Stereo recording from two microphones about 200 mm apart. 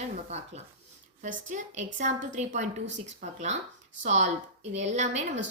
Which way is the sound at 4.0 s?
35° right (ahead or behind).